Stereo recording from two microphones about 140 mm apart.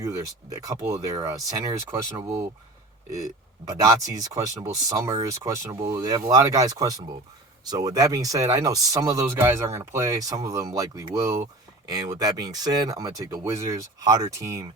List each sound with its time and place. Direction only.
0.5 s speech: 25° right (ahead or behind)